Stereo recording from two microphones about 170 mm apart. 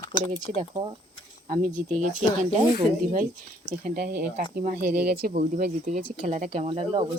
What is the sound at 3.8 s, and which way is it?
Speech, 70° right (ahead or behind).